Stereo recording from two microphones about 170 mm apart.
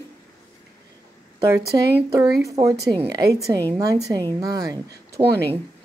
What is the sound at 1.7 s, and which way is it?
Speech, 20° right (ahead or behind).